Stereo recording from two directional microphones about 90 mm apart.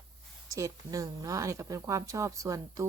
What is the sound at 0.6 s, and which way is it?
Speech, 40° right (ahead or behind).